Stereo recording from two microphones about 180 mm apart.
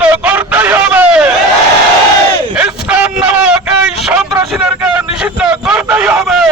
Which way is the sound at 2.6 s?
5° right (ahead or behind).